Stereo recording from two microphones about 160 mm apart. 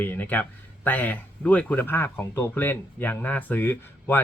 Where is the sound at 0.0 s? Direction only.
10° left (ahead or behind).